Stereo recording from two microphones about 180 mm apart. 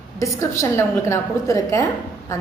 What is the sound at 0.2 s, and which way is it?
A woman's voice, 15° left (ahead or behind).